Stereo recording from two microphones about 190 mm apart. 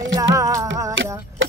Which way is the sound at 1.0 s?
85° right.